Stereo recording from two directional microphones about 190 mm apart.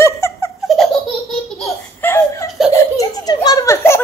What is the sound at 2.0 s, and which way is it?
Laughter, 15° left (ahead or behind).